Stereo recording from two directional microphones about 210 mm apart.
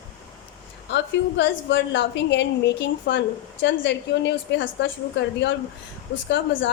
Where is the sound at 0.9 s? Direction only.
55° left (ahead or behind).